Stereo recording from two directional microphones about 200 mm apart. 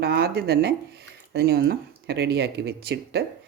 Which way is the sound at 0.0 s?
55° right (ahead or behind).